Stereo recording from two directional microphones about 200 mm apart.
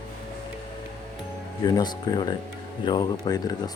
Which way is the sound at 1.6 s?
20° left (ahead or behind).